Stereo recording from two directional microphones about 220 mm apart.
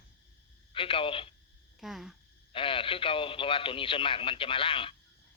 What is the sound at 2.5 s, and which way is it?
Speech, 25° left (ahead or behind).